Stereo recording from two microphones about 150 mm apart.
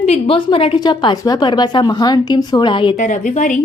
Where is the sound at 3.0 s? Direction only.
55° left (ahead or behind).